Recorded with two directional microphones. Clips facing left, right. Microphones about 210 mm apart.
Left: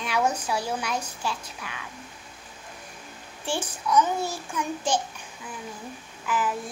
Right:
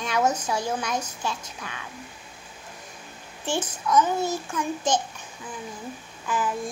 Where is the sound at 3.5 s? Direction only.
10° left (ahead or behind).